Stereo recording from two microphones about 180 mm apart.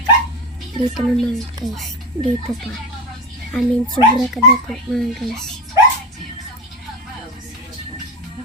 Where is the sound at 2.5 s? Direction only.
Centre (ahead or behind).